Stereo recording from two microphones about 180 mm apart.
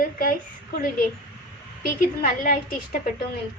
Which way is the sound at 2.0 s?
50° left (ahead or behind).